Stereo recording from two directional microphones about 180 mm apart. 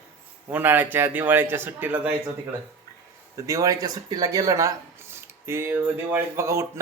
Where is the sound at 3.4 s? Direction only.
15° right (ahead or behind).